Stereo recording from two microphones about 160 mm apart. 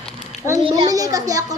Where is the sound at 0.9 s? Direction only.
20° right (ahead or behind).